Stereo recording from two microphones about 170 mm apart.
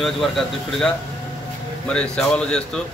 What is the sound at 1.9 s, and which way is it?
Speech, 5° left (ahead or behind).